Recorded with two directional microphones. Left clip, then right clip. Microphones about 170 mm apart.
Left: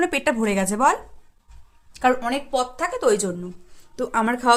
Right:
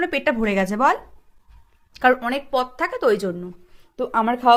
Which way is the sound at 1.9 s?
20° right (ahead or behind).